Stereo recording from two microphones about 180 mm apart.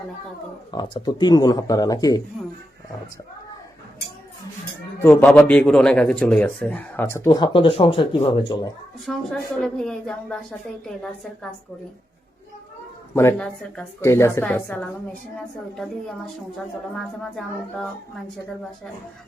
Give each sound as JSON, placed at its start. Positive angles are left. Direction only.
{"t": 0.7, "sound": "speech", "side_deg": 25}
{"t": 5.0, "sound": "a man's voice", "side_deg": 10}
{"t": 7.3, "sound": "speech", "side_deg": 25}
{"t": 9.0, "sound": "a man's voice", "side_deg": 0}
{"t": 13.1, "sound": "a man's voice", "side_deg": 10}